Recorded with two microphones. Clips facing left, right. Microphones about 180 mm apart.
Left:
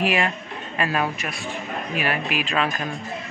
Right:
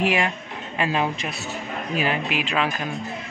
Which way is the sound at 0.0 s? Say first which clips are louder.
Even; 15° right (ahead or behind).